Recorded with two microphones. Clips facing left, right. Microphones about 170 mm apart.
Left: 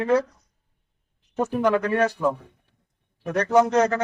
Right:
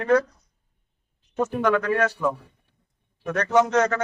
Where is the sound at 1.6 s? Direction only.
30° left (ahead or behind).